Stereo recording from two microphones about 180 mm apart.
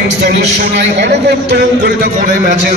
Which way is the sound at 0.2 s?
65° right (ahead or behind).